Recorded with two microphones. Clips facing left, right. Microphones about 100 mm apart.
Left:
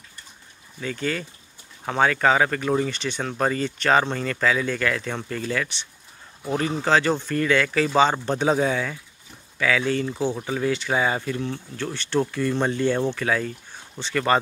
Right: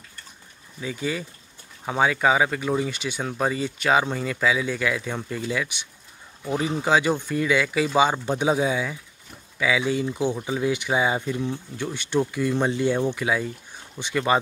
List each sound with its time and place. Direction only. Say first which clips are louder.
0.7 s speech: left 1 dB; 10° right (ahead or behind)